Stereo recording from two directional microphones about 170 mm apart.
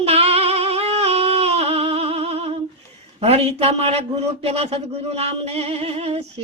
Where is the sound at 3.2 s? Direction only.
35° right (ahead or behind).